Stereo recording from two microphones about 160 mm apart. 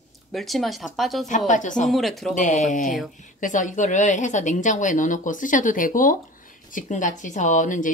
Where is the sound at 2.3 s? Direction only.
50° left (ahead or behind).